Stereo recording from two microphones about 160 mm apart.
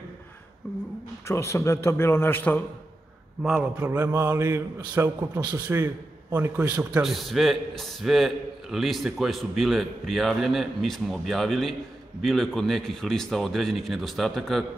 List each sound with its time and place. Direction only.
1.2 s a man's voice: 15° left (ahead or behind)
3.4 s a man's voice: 10° right (ahead or behind)